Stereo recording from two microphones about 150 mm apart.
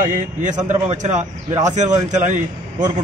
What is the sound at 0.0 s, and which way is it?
A man's voice, 60° right (ahead or behind).